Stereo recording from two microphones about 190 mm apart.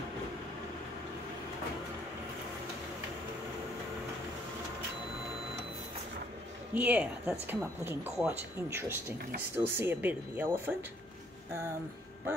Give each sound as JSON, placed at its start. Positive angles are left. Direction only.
{"t": 6.7, "sound": "speech", "side_deg": -5}